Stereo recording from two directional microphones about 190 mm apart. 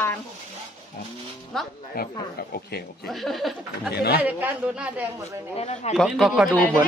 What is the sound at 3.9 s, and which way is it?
Speech, 55° left (ahead or behind).